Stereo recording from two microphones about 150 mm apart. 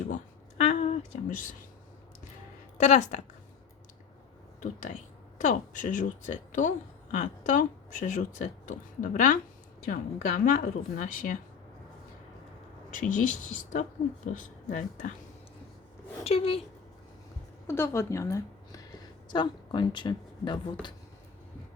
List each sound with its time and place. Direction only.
0.6 s a sound: 45° left (ahead or behind)
2.7 s speech: 50° left (ahead or behind)
5.4 s a woman's voice: 55° left (ahead or behind)
12.9 s a woman's voice: 60° left (ahead or behind)
16.2 s speech: 40° left (ahead or behind)
17.7 s a woman's voice: 15° left (ahead or behind)
19.3 s speech: 30° left (ahead or behind)